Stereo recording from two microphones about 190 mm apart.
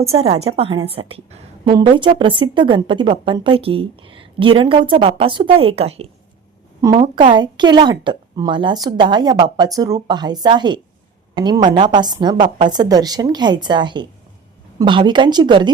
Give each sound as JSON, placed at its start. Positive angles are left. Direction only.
{"t": 0.1, "sound": "a woman's voice", "side_deg": -35}